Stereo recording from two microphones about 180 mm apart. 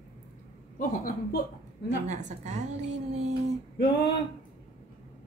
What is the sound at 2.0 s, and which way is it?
Speech, 40° right (ahead or behind).